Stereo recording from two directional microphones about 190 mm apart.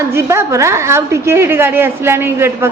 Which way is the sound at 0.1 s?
15° right (ahead or behind).